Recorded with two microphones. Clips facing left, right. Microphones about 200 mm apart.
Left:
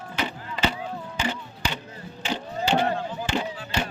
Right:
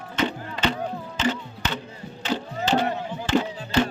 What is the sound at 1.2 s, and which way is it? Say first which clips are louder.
Music: right 4 dB; 10° left (ahead or behind).